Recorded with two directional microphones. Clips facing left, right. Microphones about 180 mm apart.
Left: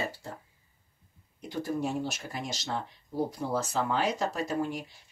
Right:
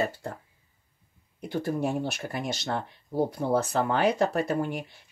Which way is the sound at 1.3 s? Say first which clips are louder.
Right 3 dB; 60° right (ahead or behind).